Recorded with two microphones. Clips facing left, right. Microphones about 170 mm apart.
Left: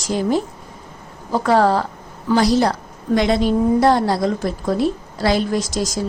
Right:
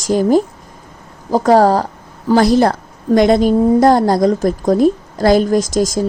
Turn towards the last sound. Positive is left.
turn(degrees=-50)  # may be behind; listen again after turning